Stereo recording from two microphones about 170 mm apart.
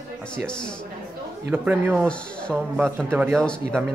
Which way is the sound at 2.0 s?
5° left (ahead or behind).